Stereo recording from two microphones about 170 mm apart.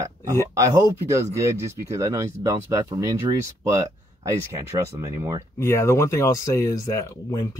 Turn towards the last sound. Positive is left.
turn(degrees=20)  # may be behind; listen again after turning